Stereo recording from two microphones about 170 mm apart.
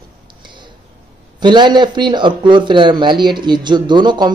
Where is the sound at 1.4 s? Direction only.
25° right (ahead or behind).